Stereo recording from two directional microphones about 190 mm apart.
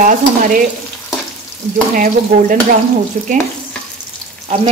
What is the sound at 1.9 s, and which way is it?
Stir, 45° right (ahead or behind).